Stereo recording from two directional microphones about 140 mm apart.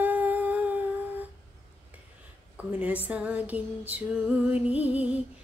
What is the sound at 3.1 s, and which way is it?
Female singing, 10° right (ahead or behind).